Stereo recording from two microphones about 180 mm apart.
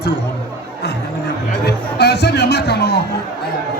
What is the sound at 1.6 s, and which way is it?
Music, 65° left (ahead or behind).